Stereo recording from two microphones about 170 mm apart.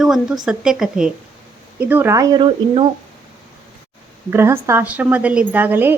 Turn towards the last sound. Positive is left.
turn(degrees=-10)  # may be behind; listen again after turning